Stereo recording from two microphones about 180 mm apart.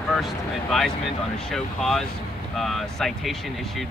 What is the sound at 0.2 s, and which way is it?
Speech, centre (ahead or behind).